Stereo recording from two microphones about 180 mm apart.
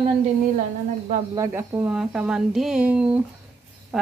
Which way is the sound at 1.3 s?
15° right (ahead or behind).